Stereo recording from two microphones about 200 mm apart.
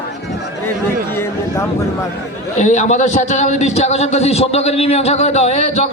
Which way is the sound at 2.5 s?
35° left (ahead or behind).